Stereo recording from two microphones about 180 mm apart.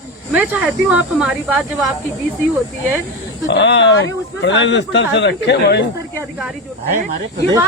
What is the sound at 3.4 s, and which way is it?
Speech, 80° left.